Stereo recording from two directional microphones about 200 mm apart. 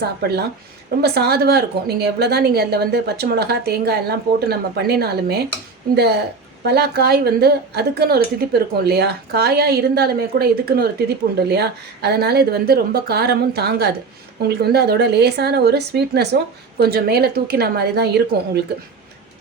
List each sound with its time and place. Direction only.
0.0 s a woman's voice: 55° right (ahead or behind)